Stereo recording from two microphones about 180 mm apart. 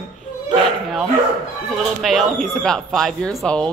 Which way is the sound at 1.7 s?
Centre (ahead or behind).